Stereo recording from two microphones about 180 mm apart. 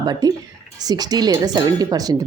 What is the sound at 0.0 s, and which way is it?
Speech, 20° right (ahead or behind).